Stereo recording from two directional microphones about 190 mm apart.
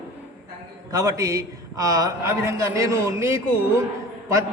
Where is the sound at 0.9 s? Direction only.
15° right (ahead or behind).